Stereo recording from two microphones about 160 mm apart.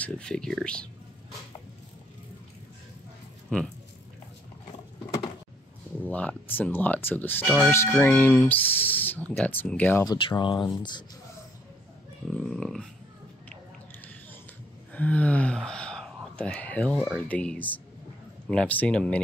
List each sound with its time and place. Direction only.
0.0 s speech: 5° left (ahead or behind)
3.4 s speech: 5° left (ahead or behind)
6.0 s speech: 10° left (ahead or behind)
10.0 s speech: 30° left (ahead or behind)
12.4 s speech: 5° left (ahead or behind)
15.0 s speech: 10° left (ahead or behind)